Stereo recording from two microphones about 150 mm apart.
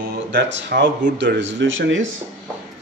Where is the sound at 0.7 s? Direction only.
90° right.